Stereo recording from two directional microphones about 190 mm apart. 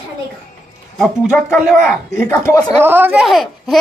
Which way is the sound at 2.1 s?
15° left (ahead or behind).